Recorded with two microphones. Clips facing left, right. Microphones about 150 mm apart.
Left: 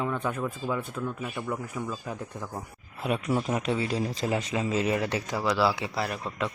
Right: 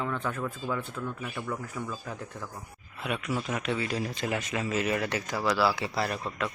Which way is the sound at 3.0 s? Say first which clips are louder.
Left 4 dB; 30° left (ahead or behind).